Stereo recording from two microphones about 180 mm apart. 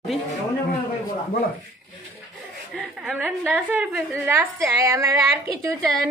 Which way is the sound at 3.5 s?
10° right (ahead or behind).